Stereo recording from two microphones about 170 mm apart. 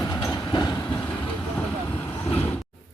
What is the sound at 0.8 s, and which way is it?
Vehicle, 10° left (ahead or behind).